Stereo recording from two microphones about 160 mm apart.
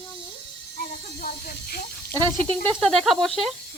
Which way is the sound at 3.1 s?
Centre (ahead or behind).